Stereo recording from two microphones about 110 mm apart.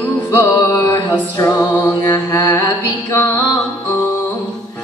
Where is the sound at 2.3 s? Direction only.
30° left (ahead or behind).